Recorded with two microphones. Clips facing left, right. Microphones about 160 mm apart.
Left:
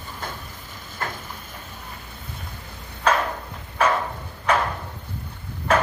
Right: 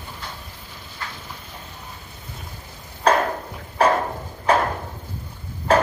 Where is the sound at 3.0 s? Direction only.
35° right (ahead or behind).